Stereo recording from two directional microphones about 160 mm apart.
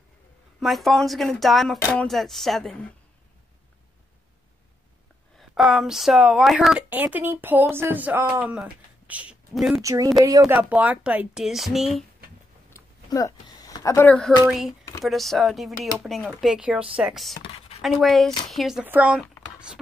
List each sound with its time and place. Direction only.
0.6 s speech: centre (ahead or behind)
5.5 s speech: 5° right (ahead or behind)
6.9 s speech: 10° right (ahead or behind)
9.8 s speech: 20° right (ahead or behind)
10.6 s speech: 10° right (ahead or behind)
12.7 s a sound: 20° left (ahead or behind)
14.5 s speech: centre (ahead or behind)
17.4 s a sound: 40° left (ahead or behind)
17.8 s speech: centre (ahead or behind)